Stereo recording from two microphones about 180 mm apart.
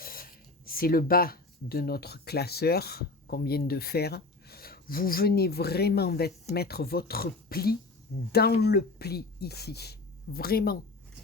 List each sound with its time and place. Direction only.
0.0 s speech: 55° left (ahead or behind)